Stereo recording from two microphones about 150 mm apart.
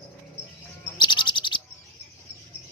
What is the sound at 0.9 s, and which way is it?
Bird, 30° left (ahead or behind).